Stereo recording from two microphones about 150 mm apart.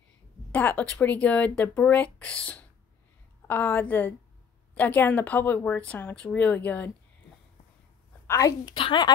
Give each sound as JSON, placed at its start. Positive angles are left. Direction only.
{"t": 0.5, "sound": "speech", "side_deg": 10}
{"t": 8.3, "sound": "speech", "side_deg": 25}
{"t": 8.7, "sound": "speech", "side_deg": 35}